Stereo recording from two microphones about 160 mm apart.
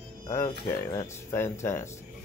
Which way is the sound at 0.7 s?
20° left (ahead or behind).